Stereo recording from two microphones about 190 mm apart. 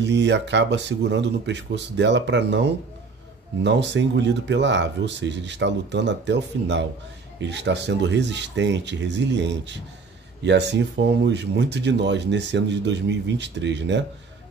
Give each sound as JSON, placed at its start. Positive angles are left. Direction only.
{"t": 0.0, "sound": "speech", "side_deg": -65}